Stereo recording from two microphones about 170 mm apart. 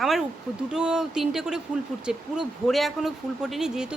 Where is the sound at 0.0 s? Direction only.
Centre (ahead or behind).